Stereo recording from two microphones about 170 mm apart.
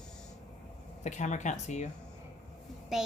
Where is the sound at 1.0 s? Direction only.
45° left (ahead or behind).